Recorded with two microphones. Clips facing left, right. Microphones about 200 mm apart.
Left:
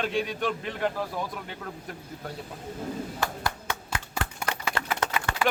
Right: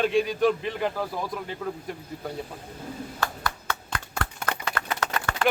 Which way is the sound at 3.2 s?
15° left (ahead or behind).